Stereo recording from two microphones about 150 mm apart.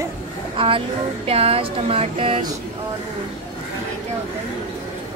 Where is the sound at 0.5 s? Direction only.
35° right (ahead or behind).